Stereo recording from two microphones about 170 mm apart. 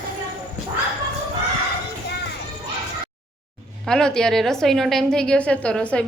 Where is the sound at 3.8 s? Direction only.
5° left (ahead or behind).